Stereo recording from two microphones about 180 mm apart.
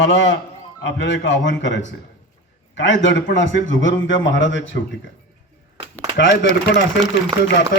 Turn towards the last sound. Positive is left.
turn(degrees=75)  # may be behind; listen again after turning